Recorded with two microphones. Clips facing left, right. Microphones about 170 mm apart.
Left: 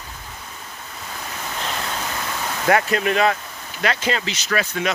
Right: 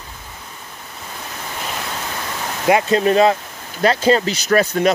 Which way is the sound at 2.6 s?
20° right (ahead or behind).